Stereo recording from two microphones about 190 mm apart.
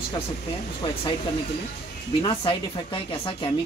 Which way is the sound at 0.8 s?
30° left (ahead or behind).